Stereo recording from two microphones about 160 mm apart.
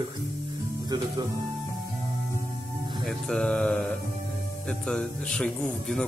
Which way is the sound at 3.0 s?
5° left (ahead or behind).